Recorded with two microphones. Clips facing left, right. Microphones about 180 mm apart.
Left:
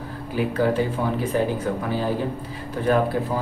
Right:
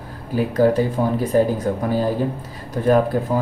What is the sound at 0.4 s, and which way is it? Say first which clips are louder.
Speech: right 4 dB; 40° right (ahead or behind).